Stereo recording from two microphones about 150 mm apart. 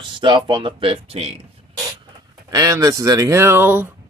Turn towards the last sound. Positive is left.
turn(degrees=-15)  # may be behind; listen again after turning